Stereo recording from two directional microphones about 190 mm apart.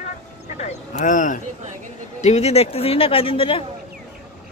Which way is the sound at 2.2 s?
35° left (ahead or behind).